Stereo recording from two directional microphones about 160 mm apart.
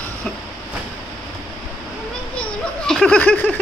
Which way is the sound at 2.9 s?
5° left (ahead or behind).